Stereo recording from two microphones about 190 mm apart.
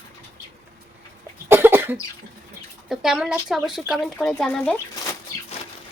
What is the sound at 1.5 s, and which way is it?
Cough, 10° right (ahead or behind).